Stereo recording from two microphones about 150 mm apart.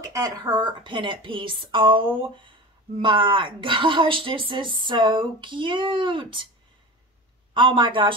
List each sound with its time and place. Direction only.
0.0 s speech: 25° right (ahead or behind)
7.5 s speech: 35° right (ahead or behind)